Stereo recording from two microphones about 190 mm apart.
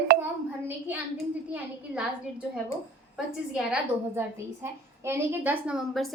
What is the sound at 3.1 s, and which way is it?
A woman's voice, 5° right (ahead or behind).